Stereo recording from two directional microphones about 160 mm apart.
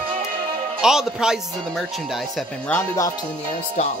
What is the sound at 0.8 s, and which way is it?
Speech, 5° right (ahead or behind).